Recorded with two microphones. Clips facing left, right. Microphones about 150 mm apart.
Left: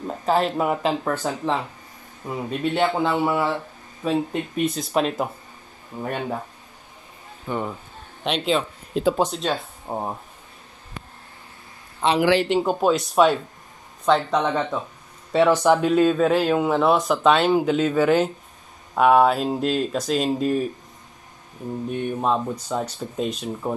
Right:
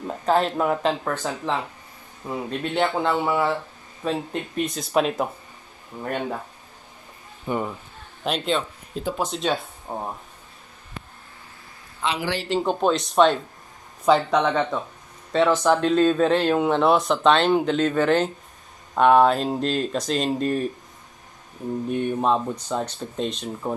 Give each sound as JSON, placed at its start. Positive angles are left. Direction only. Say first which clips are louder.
{"t": 0.2, "sound": "speech", "louder": "even", "side_deg": 5}
{"t": 7.5, "sound": "speech", "louder": "right 1 dB", "side_deg": -15}
{"t": 8.2, "sound": "speech", "louder": "left 2 dB", "side_deg": 0}
{"t": 9.0, "sound": "speech", "louder": "left 8 dB", "side_deg": 75}
{"t": 9.3, "sound": "speech", "louder": "right 1 dB", "side_deg": 0}
{"t": 9.9, "sound": "speech", "louder": "left 3 dB", "side_deg": 20}
{"t": 12.2, "sound": "speech", "louder": "left 9 dB", "side_deg": 80}
{"t": 12.4, "sound": "speech", "louder": "left 2 dB", "side_deg": 10}
{"t": 21.8, "sound": "speech", "louder": "right 1 dB", "side_deg": 0}